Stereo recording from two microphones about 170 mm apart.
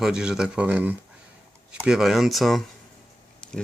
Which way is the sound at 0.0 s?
5° right (ahead or behind).